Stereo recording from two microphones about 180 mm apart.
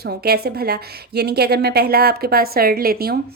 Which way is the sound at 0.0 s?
60° right (ahead or behind).